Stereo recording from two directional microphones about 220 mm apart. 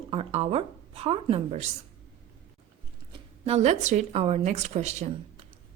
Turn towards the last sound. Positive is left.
turn(degrees=-30)  # may be behind; listen again after turning